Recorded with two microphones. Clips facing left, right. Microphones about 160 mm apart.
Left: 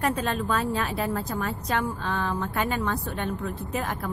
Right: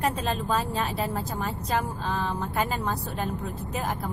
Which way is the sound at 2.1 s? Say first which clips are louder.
Left 1 dB; 30° right (ahead or behind).